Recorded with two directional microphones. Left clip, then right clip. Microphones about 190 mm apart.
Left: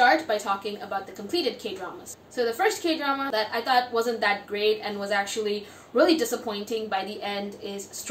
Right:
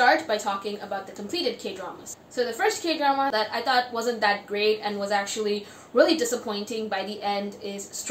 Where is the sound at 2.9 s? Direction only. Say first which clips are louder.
Right 3 dB; 10° right (ahead or behind).